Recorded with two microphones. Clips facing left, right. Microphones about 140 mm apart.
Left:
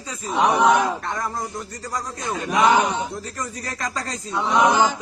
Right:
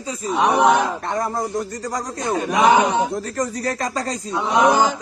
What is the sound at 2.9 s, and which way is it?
Speech, 75° right (ahead or behind).